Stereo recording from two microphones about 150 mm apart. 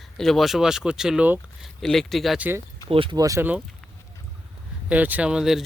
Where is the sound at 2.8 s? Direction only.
35° right (ahead or behind).